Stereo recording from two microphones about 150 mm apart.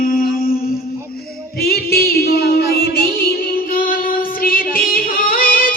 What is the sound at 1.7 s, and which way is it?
Music, 90° left.